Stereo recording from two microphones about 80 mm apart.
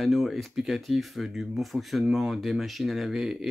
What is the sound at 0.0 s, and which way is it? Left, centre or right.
Speech, centre.